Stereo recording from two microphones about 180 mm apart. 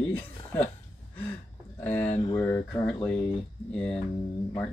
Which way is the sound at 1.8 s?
10° left (ahead or behind).